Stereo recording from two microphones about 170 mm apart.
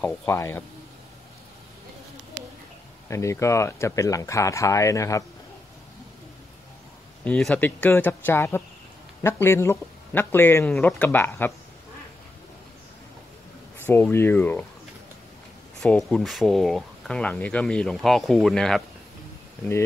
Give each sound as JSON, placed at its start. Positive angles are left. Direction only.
{"t": 0.0, "sound": "speech", "side_deg": 10}
{"t": 3.1, "sound": "speech", "side_deg": 15}
{"t": 7.2, "sound": "speech", "side_deg": 5}
{"t": 13.8, "sound": "speech", "side_deg": 15}
{"t": 15.8, "sound": "speech", "side_deg": 5}